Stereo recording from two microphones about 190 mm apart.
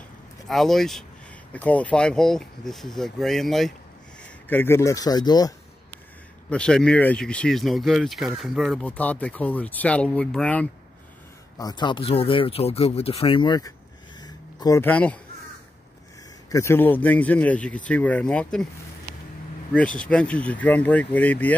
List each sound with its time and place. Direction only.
0.5 s speech: centre (ahead or behind); by 5.5 s 20° left (ahead or behind)
6.5 s speech: 5° left (ahead or behind)
11.5 s speech: 20° left (ahead or behind)
14.2 s a sound: 20° left (ahead or behind)
16.4 s speech: 15° left (ahead or behind)
20.0 s speech: 5° left (ahead or behind)